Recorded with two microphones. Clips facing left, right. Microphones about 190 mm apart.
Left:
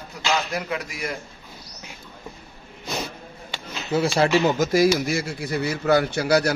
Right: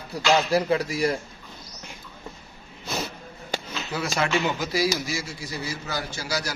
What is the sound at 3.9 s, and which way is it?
Speech, 30° left (ahead or behind).